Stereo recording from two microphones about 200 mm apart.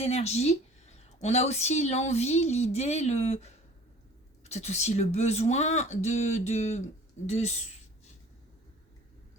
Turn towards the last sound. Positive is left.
turn(degrees=35)  # may be behind; listen again after turning